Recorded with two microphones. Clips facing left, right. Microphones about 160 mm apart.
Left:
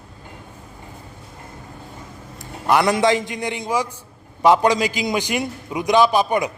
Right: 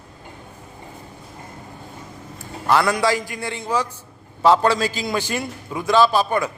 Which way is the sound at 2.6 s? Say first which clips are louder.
Left 2 dB; 20° left (ahead or behind).